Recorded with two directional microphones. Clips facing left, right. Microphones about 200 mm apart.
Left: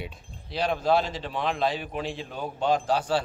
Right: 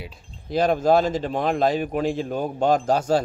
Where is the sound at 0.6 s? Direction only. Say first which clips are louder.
Right 6 dB; 45° right (ahead or behind).